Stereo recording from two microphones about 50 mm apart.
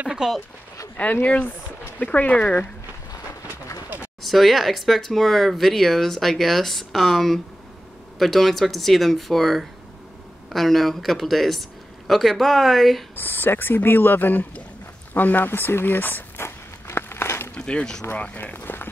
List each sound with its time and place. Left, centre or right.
0.2 s speech: centre
0.9 s speech: left
4.2 s speech: centre
13.1 s speech: left
16.3 s a sound: left
17.6 s speech: centre
18.1 s speech: left
18.4 s run: left